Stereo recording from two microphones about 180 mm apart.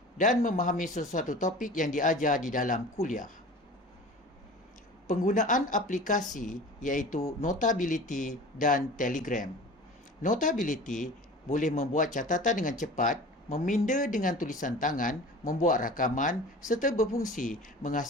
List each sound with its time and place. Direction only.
0.2 s speech: 45° left (ahead or behind)
5.0 s speech: 45° left (ahead or behind)